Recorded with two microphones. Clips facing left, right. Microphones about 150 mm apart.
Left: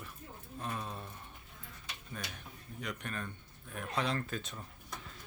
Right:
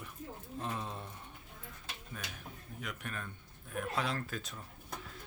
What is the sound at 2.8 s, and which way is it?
Speech, 5° right (ahead or behind).